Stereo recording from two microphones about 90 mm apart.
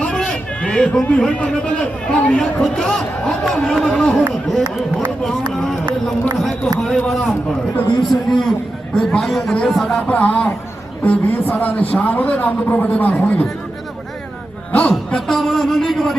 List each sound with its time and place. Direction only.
0.0 s a man's voice: 10° left (ahead or behind)
7.9 s a man's voice: 55° left (ahead or behind)
8.1 s speech: 5° left (ahead or behind)
10.1 s a man's voice: 15° left (ahead or behind)
14.7 s a man's voice: 15° left (ahead or behind)